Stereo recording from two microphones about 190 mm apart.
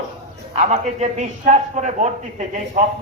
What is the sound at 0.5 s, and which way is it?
A man's voice, 35° right (ahead or behind).